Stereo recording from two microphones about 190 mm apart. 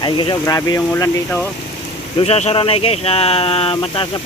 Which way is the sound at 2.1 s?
35° left (ahead or behind).